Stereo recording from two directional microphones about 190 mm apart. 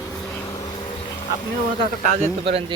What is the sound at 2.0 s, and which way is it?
Speech, 40° right (ahead or behind).